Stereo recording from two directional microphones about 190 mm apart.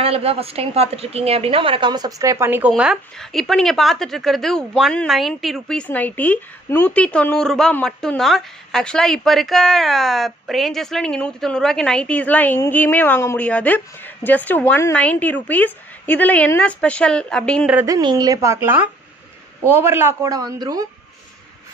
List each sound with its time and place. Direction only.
0.0 s a woman's voice: 30° right (ahead or behind); by 2.7 s 10° right (ahead or behind)
2.7 s speech: centre (ahead or behind)
17.7 s a man's voice: 20° right (ahead or behind)